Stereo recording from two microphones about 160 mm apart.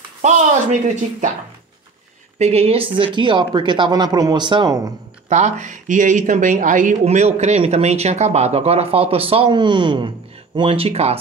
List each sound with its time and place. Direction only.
0.2 s speech: 50° right (ahead or behind)
2.3 s speech: 40° right (ahead or behind)
5.3 s speech: 45° right (ahead or behind)